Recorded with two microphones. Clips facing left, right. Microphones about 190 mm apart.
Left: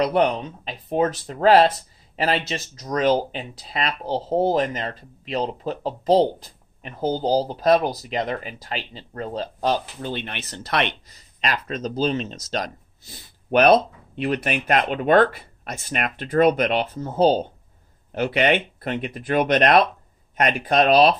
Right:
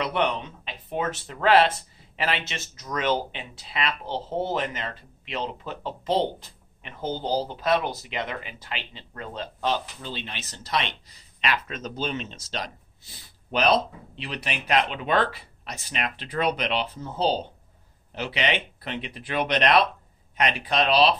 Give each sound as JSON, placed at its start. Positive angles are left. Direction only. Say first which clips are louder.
{"t": 0.0, "sound": "speech", "louder": "left 6 dB", "side_deg": 40}
{"t": 10.0, "sound": "speech", "louder": "left 6 dB", "side_deg": 55}
{"t": 11.4, "sound": "speech", "louder": "left 3 dB", "side_deg": 40}